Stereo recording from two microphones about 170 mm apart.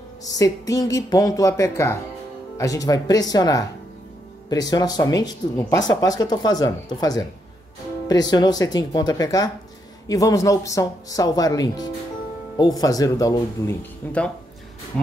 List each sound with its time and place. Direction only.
0.2 s speech: 20° left (ahead or behind)